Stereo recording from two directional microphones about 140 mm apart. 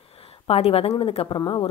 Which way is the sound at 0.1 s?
45° left (ahead or behind).